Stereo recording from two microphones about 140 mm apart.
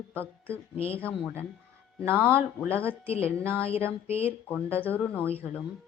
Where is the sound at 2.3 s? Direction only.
15° right (ahead or behind).